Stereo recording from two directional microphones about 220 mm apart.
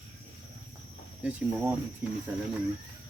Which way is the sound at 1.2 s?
5° right (ahead or behind).